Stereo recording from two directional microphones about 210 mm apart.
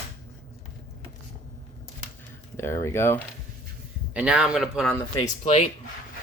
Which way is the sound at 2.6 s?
15° left (ahead or behind).